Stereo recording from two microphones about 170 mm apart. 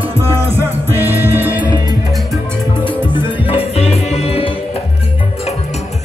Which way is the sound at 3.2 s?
35° left (ahead or behind).